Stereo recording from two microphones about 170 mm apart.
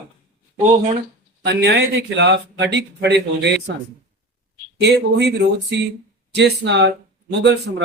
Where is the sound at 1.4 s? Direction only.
80° right.